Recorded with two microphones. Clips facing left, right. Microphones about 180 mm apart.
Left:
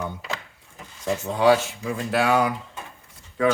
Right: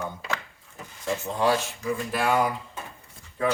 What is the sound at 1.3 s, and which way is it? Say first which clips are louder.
Speech: left 7 dB; 75° left (ahead or behind).